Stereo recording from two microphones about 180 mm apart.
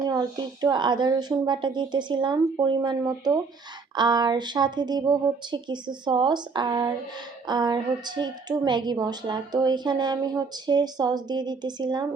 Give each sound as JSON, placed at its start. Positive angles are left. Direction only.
{"t": 0.0, "sound": "a woman's voice", "side_deg": -20}